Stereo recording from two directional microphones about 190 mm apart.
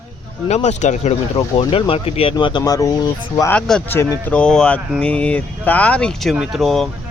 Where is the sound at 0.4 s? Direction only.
35° left (ahead or behind); by 3.5 s 20° left (ahead or behind).